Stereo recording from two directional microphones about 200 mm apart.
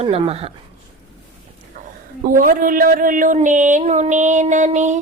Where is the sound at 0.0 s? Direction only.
30° right (ahead or behind).